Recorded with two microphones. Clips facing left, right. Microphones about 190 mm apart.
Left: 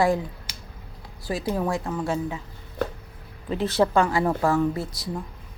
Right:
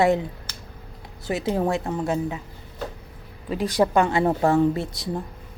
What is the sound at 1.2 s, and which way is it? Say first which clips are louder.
A woman's voice: right 3 dB; 25° right (ahead or behind).